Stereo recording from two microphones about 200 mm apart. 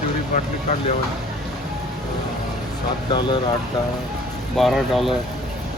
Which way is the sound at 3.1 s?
20° left (ahead or behind).